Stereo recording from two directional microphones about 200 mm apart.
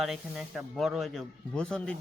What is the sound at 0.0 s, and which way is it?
Speech, centre (ahead or behind).